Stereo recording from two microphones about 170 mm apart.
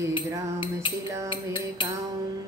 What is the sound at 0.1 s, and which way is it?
Music, 30° left (ahead or behind).